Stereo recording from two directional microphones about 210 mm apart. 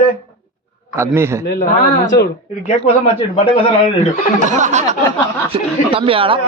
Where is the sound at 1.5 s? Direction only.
45° left (ahead or behind).